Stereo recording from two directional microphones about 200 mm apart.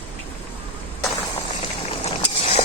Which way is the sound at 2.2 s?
30° left (ahead or behind).